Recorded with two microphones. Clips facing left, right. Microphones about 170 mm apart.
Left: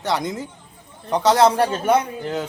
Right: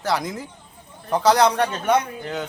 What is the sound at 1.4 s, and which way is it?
A man's voice, 30° left (ahead or behind).